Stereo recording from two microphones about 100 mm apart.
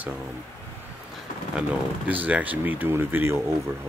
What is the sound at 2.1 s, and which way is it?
Speech, 15° right (ahead or behind).